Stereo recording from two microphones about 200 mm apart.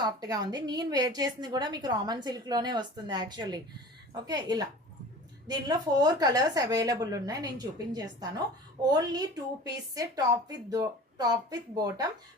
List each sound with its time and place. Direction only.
0.0 s a woman's voice: 20° right (ahead or behind)